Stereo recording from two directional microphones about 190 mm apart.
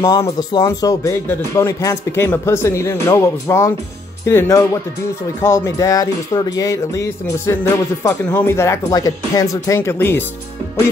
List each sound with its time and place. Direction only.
0.0 s speech: 15° left (ahead or behind)